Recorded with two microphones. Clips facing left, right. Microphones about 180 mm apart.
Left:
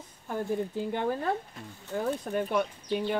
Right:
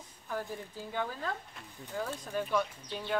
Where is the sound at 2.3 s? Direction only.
55° left (ahead or behind).